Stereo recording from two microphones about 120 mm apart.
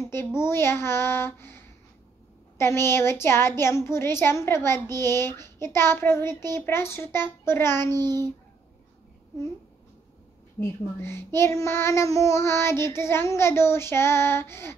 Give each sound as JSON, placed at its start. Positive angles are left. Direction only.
{"t": 0.0, "sound": "a sound", "side_deg": 20}
{"t": 0.4, "sound": "child singing", "side_deg": 20}
{"t": 10.6, "sound": "child singing", "side_deg": 20}